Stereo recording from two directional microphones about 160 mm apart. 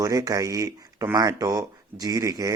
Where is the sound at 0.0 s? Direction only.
20° right (ahead or behind).